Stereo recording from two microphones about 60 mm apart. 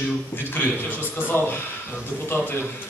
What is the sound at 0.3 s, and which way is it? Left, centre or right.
A man's voice, left.